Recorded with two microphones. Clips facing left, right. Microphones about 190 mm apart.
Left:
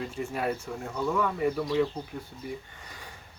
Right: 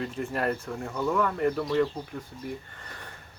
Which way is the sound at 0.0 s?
Centre (ahead or behind).